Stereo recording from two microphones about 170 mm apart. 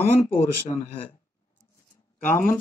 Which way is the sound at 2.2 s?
50° left (ahead or behind).